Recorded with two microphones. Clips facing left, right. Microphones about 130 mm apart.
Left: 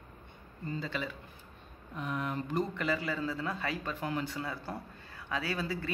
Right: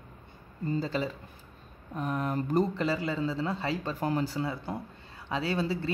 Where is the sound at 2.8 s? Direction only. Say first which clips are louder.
Right 4 dB; 30° right (ahead or behind).